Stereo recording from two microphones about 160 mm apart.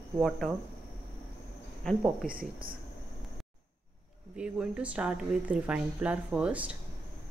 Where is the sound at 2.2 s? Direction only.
5° right (ahead or behind).